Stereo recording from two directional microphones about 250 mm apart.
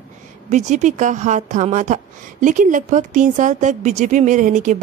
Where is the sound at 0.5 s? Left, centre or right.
Right.